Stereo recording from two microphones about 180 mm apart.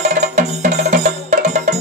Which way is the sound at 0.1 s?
40° right (ahead or behind).